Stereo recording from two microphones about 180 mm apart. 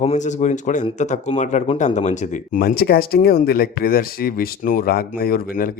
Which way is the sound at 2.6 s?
60° left (ahead or behind).